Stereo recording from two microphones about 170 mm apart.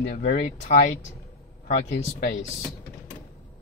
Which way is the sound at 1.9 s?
70° left (ahead or behind).